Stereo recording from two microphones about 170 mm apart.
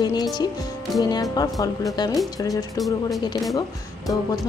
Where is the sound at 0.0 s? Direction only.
25° left (ahead or behind).